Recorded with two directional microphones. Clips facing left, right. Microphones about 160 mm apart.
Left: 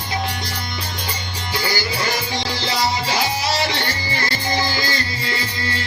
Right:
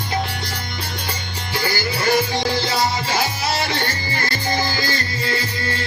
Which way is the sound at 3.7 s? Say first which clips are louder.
Even; 45° right (ahead or behind).